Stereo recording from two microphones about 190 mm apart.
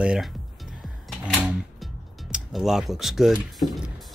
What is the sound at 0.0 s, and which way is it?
Speech, 5° right (ahead or behind).